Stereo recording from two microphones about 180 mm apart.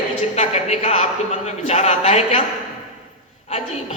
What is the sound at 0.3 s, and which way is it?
A man's voice, 35° left (ahead or behind).